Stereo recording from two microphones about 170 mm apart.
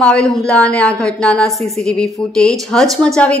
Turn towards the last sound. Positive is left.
turn(degrees=5)  # may be behind; listen again after turning